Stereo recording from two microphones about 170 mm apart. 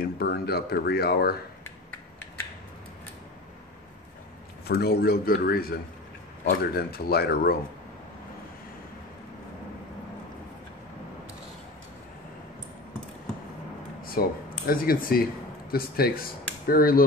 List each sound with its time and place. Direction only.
0.0 s speech: 65° left (ahead or behind)
4.6 s speech: 70° left (ahead or behind)
14.2 s speech: 60° left (ahead or behind)